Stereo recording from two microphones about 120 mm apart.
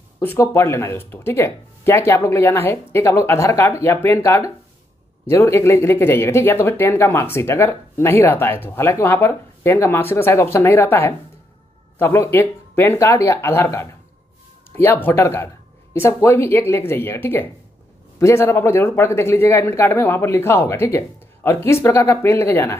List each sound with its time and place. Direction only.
0.2 s speech: 20° left (ahead or behind)